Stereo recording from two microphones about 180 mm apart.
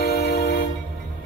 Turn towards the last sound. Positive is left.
turn(degrees=65)  # may be behind; listen again after turning